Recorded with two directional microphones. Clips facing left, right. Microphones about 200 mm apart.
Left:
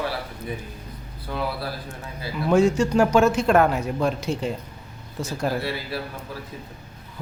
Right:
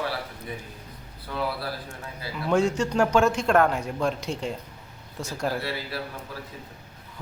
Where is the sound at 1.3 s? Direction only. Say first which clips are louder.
Left 2 dB; 20° left (ahead or behind).